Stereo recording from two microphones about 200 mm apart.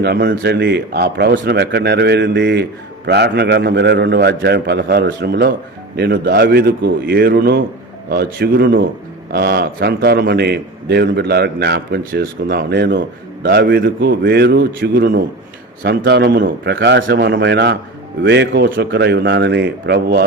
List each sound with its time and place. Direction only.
0.0 s a man's voice: 55° right (ahead or behind)